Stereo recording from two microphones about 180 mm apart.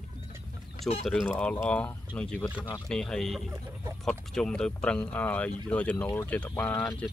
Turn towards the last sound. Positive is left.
turn(degrees=10)  # may be behind; listen again after turning